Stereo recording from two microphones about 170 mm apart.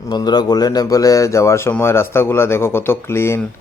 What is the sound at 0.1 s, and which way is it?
Speech, 25° left (ahead or behind).